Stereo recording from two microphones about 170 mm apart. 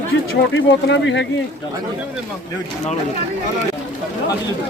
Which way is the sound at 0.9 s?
90° left.